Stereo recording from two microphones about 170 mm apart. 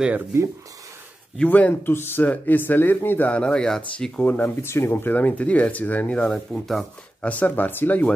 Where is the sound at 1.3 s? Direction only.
10° left (ahead or behind).